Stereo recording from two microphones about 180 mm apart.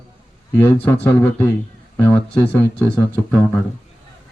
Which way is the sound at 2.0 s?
10° left (ahead or behind).